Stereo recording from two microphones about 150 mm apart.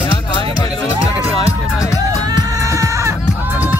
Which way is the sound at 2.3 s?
20° right (ahead or behind).